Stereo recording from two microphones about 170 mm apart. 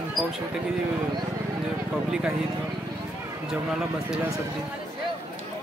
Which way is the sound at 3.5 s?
5° right (ahead or behind).